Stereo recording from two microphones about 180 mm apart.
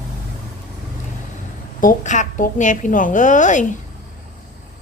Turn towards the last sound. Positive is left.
turn(degrees=45)  # may be behind; listen again after turning